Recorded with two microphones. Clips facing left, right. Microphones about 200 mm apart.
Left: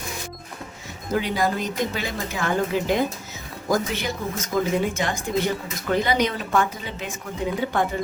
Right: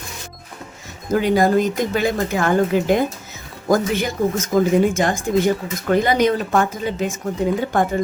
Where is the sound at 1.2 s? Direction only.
50° right (ahead or behind).